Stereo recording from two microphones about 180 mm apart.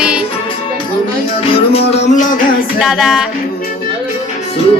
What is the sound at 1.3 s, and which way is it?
Music, 30° left (ahead or behind).